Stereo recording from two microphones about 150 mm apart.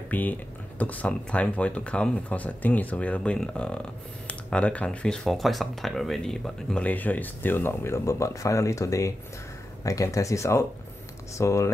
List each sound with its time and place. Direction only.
0.1 s speech: 10° left (ahead or behind)